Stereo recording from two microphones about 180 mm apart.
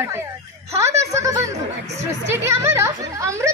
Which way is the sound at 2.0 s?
15° right (ahead or behind).